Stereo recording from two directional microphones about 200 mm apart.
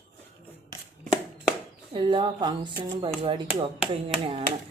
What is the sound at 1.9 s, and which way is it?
Speech, 25° right (ahead or behind).